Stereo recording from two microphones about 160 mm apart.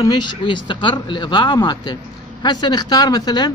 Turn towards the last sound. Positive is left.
turn(degrees=25)  # may be behind; listen again after turning